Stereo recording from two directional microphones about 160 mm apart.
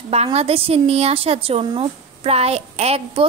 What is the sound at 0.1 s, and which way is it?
A woman's voice, 40° right (ahead or behind).